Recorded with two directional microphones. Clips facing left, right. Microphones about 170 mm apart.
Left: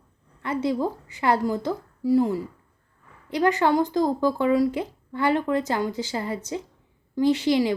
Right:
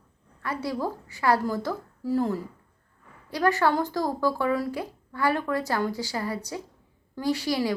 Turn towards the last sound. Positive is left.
turn(degrees=20)  # may be behind; listen again after turning